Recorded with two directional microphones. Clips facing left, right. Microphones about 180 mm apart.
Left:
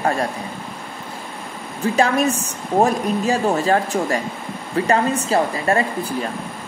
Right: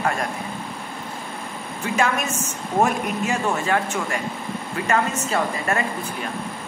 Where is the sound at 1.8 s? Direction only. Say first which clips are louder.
Left 6 dB; 35° left (ahead or behind).